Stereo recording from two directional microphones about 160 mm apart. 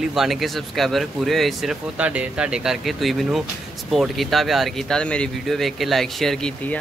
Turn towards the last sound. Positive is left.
turn(degrees=5)  # may be behind; listen again after turning